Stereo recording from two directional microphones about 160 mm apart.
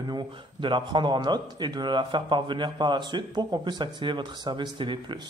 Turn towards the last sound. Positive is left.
turn(degrees=-30)  # may be behind; listen again after turning